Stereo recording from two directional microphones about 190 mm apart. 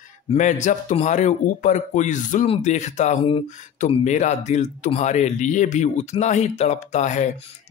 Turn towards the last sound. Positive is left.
turn(degrees=35)  # may be behind; listen again after turning